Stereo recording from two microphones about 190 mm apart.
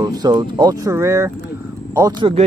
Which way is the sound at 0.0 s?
20° right (ahead or behind).